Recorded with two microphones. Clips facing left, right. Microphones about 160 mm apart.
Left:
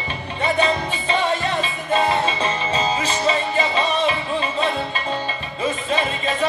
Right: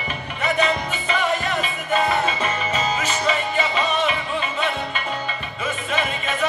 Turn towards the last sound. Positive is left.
turn(degrees=30)  # may be behind; listen again after turning